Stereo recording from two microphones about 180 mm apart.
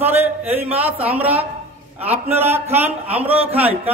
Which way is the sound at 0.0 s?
10° right (ahead or behind).